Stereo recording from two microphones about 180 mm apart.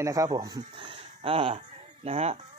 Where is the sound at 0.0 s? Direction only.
20° right (ahead or behind).